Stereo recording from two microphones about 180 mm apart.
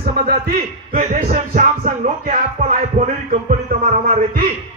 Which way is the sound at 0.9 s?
45° right (ahead or behind).